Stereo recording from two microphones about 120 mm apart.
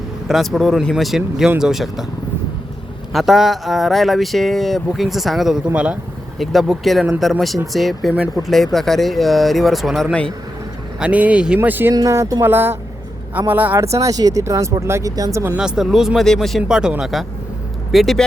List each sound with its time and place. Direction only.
0.3 s speech: centre (ahead or behind)
3.1 s speech: centre (ahead or behind)
6.4 s speech: centre (ahead or behind)
11.0 s speech: 10° right (ahead or behind)
15.5 s speech: 5° right (ahead or behind)